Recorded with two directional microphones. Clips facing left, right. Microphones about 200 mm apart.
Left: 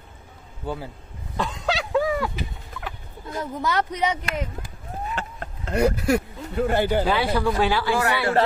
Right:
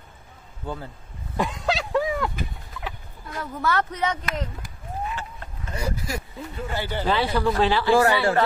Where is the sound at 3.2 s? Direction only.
20° left (ahead or behind).